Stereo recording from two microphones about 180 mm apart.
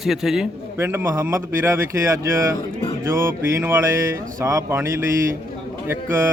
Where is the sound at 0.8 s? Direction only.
15° right (ahead or behind).